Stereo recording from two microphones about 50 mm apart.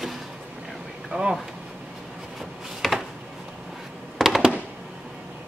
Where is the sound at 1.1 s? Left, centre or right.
Right.